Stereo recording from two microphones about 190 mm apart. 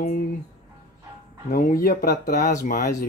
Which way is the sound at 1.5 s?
50° left (ahead or behind).